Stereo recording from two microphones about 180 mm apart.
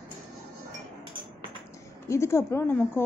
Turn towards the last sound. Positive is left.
turn(degrees=15)  # may be behind; listen again after turning